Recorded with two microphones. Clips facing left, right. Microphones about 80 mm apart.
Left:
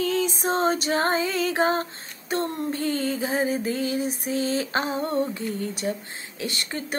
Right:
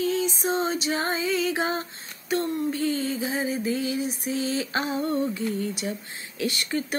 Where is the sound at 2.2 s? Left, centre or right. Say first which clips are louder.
Right 1 dB; left.